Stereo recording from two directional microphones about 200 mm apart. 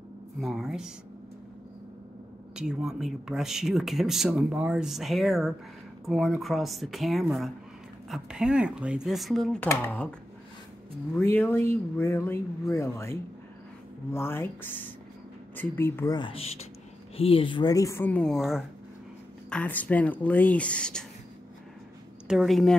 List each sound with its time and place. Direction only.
0.4 s speech: centre (ahead or behind)
2.5 s speech: 5° right (ahead or behind)
11.1 s speech: 10° left (ahead or behind)
16.2 s speech: 30° left (ahead or behind); by 21.0 s 5° left (ahead or behind)
22.3 s speech: centre (ahead or behind)